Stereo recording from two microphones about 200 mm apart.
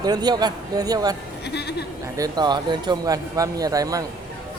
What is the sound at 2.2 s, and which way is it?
Speech, 20° right (ahead or behind).